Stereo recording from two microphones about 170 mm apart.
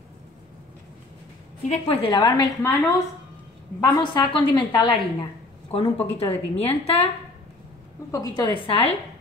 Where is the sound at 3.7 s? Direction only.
20° left (ahead or behind).